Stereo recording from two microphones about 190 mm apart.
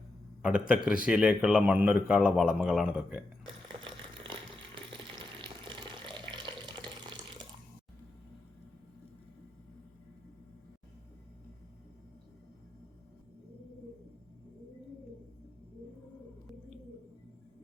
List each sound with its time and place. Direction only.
0.4 s a man's voice: 5° right (ahead or behind)
3.8 s a sound: 25° right (ahead or behind)
5.4 s water tap: 25° right (ahead or behind)